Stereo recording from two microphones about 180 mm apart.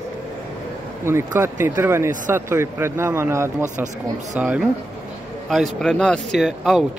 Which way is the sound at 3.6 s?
45° right (ahead or behind).